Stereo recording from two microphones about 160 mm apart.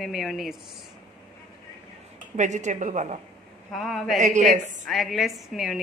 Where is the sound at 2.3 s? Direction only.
50° right (ahead or behind).